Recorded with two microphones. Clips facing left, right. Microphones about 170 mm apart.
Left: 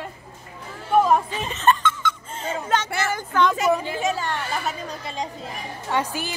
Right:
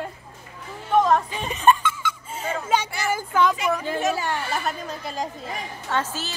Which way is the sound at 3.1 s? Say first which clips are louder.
Even; 5° right (ahead or behind).